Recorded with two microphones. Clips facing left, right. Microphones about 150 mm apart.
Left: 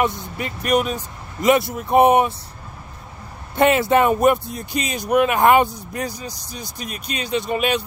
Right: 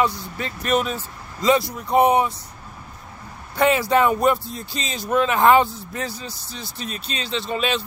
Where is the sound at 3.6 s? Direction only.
20° left (ahead or behind).